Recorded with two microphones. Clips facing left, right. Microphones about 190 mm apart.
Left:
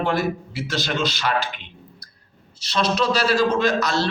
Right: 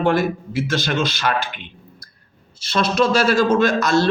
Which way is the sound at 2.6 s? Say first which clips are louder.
Right 3 dB; 50° right (ahead or behind).